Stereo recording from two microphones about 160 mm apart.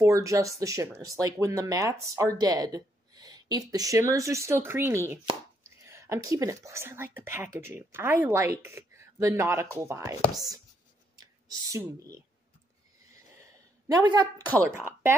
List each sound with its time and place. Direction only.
0.0 s speech: 20° right (ahead or behind)
13.9 s speech: 25° right (ahead or behind)
14.6 s speech: 15° right (ahead or behind)